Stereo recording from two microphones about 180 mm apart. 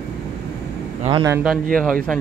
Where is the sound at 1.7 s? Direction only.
5° left (ahead or behind).